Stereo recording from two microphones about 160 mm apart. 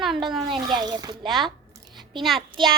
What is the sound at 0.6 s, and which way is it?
Speech, 25° right (ahead or behind).